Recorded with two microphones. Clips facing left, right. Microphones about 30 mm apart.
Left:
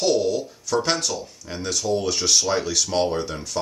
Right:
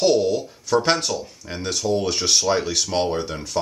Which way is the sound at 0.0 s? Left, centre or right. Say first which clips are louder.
Right 2 dB; centre.